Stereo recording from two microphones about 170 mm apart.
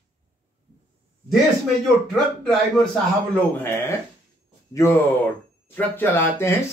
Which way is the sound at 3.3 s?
15° left (ahead or behind).